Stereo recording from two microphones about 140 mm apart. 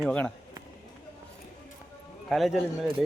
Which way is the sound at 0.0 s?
5° left (ahead or behind).